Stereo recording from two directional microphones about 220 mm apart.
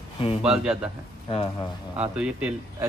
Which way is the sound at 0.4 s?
5° right (ahead or behind).